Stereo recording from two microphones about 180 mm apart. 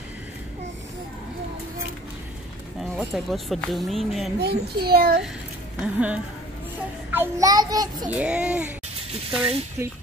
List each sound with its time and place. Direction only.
2.8 s speech: centre (ahead or behind)
4.4 s a child's voice: 60° right (ahead or behind)
5.8 s a child's voice: 5° right (ahead or behind); by 8.1 s 20° right (ahead or behind)
8.1 s speech: 5° right (ahead or behind)